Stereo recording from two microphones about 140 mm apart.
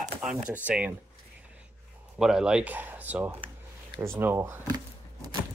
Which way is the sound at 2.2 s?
5° right (ahead or behind).